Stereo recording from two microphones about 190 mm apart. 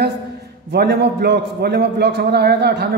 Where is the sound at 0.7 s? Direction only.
60° right (ahead or behind).